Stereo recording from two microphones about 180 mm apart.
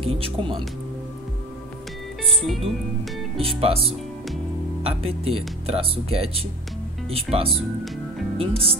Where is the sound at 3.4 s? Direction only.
30° right (ahead or behind).